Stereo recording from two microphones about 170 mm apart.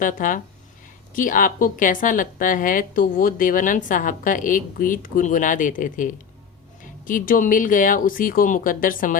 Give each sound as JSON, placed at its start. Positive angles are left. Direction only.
{"t": 0.0, "sound": "a woman's voice", "side_deg": 50}